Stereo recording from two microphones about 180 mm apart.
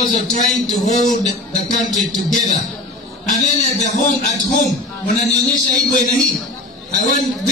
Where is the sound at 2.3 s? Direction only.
45° left (ahead or behind).